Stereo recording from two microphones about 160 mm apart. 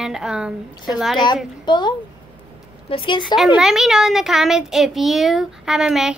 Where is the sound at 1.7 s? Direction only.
30° left (ahead or behind).